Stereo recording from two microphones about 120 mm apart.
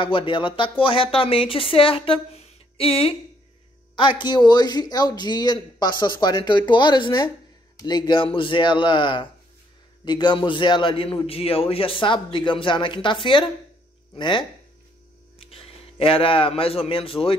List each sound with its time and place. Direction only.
0.0 s a man's voice: 45° left (ahead or behind)
15.3 s a man's voice: 55° left (ahead or behind)